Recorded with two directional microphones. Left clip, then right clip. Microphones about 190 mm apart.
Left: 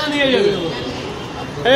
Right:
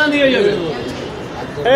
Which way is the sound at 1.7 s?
25° left (ahead or behind).